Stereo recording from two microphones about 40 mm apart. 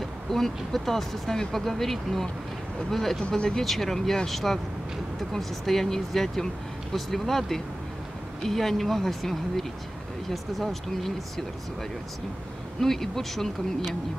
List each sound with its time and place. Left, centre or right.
0.0 s speech: centre
3.6 s speech: centre
12.8 s speech: centre